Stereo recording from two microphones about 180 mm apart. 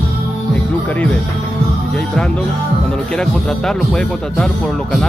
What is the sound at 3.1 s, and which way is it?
Speech, 5° left (ahead or behind).